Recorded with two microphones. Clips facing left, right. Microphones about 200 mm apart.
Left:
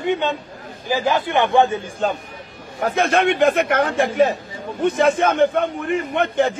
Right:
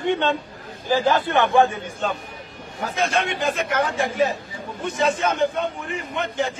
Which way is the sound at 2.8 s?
60° left (ahead or behind).